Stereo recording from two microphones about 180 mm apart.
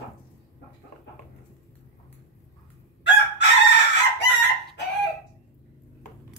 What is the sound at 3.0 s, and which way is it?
Chicken, 75° left (ahead or behind).